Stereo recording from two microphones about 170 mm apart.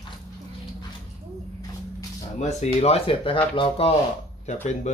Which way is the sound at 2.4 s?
40° left (ahead or behind).